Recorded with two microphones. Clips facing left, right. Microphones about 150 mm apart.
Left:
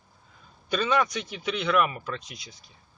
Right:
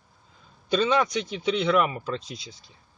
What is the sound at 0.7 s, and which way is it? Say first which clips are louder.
Speech: right 3 dB; 20° right (ahead or behind).